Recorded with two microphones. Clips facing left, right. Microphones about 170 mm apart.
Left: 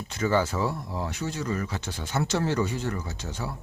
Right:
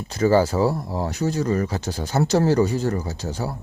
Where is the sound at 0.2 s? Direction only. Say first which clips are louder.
Right 7 dB; 35° right (ahead or behind).